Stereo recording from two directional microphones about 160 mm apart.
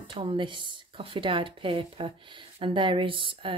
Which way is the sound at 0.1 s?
35° right (ahead or behind).